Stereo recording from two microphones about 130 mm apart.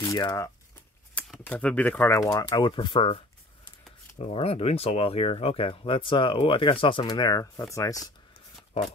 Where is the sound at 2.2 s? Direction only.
25° left (ahead or behind); by 3.2 s 40° left (ahead or behind).